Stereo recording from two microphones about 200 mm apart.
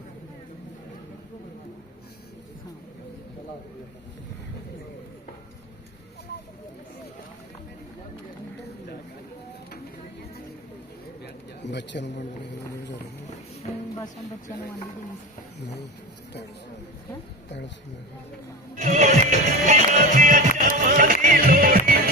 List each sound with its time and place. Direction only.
11.6 s a man's voice: 60° left (ahead or behind)
13.6 s speech: 35° left (ahead or behind)
18.8 s music: 35° right (ahead or behind)